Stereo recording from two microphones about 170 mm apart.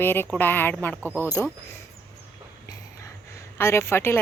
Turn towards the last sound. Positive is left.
turn(degrees=15)  # may be behind; listen again after turning